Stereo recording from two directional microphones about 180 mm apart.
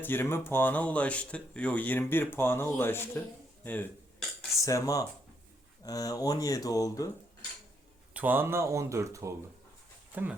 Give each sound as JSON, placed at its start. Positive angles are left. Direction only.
{"t": 0.0, "sound": "speech", "side_deg": 10}
{"t": 8.1, "sound": "speech", "side_deg": -10}